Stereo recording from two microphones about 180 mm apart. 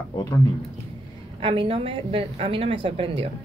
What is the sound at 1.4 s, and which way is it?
A woman's voice, 30° right (ahead or behind).